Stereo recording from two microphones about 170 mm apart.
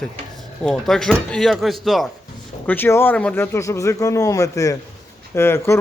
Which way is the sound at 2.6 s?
10° left (ahead or behind).